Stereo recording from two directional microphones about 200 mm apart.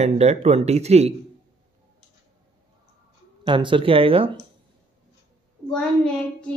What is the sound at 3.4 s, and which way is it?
Speech, 25° right (ahead or behind).